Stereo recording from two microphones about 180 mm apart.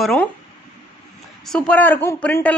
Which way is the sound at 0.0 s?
5° left (ahead or behind).